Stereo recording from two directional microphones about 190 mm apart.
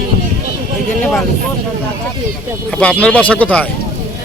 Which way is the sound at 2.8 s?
5° left (ahead or behind).